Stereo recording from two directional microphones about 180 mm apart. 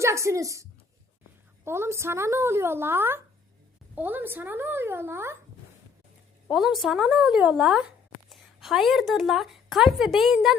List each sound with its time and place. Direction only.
0.0 s a woman's voice: 15° right (ahead or behind)
6.5 s a woman's voice: centre (ahead or behind)